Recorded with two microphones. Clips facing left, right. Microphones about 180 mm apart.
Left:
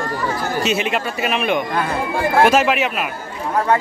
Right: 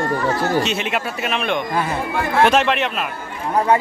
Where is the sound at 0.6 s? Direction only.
Centre (ahead or behind).